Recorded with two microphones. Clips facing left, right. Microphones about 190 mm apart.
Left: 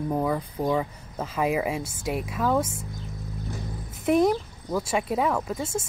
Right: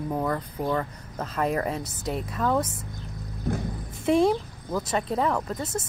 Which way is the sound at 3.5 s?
55° right (ahead or behind).